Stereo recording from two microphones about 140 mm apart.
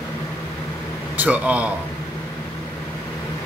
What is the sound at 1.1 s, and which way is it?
Speech, 10° right (ahead or behind).